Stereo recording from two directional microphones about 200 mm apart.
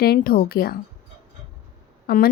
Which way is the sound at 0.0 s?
50° left (ahead or behind).